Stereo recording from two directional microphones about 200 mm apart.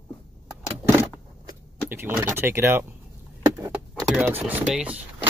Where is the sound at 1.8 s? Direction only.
10° right (ahead or behind).